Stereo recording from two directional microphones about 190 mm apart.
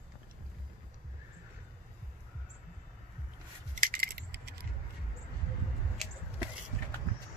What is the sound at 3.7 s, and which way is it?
Keys jangling, 45° right (ahead or behind).